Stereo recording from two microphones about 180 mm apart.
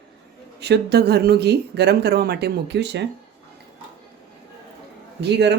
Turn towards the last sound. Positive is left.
turn(degrees=-70)  # may be behind; listen again after turning